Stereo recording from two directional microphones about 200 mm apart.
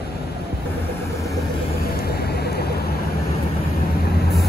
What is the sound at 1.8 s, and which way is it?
Vehicle, 50° left (ahead or behind).